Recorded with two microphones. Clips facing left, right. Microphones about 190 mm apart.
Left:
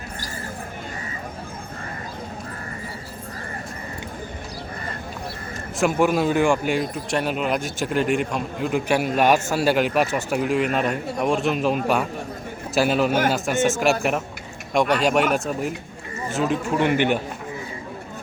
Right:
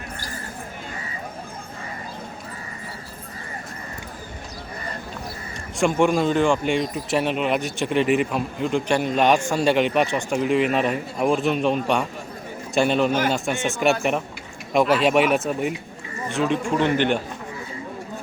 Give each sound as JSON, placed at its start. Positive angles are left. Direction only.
{"t": 5.8, "sound": "a man's voice", "side_deg": 5}